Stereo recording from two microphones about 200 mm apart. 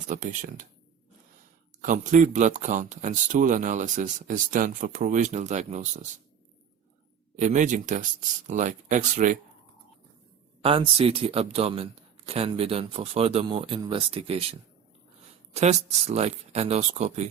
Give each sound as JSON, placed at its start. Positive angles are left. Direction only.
{"t": 0.1, "sound": "speech", "side_deg": -40}
{"t": 1.8, "sound": "speech", "side_deg": -40}
{"t": 7.3, "sound": "speech", "side_deg": -40}
{"t": 10.6, "sound": "a man's voice", "side_deg": -30}
{"t": 15.5, "sound": "speech", "side_deg": -35}